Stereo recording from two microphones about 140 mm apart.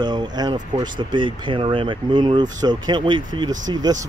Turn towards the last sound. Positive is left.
turn(degrees=-30)  # may be behind; listen again after turning